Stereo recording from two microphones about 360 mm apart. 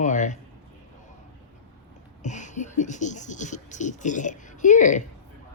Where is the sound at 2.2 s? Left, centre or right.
Centre.